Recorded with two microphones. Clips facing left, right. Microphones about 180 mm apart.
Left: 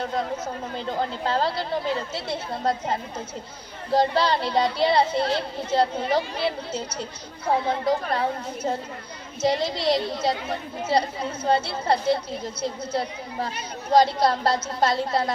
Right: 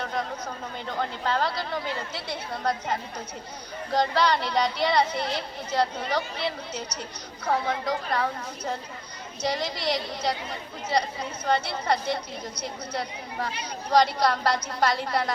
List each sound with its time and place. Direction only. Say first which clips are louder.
0.0 s speech: left 4 dB; 25° left (ahead or behind)
7.4 s speech: left 4 dB; 25° left (ahead or behind)